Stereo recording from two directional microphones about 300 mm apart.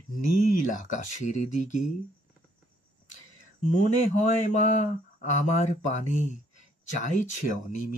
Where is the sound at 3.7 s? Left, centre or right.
Left.